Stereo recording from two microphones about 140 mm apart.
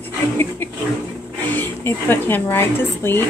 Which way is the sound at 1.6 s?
15° left (ahead or behind).